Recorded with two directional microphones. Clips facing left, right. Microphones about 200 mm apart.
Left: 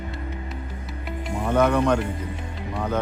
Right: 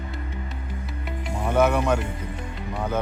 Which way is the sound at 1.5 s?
10° right (ahead or behind).